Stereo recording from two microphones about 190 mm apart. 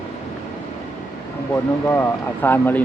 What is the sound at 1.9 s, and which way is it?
Speech, 10° left (ahead or behind).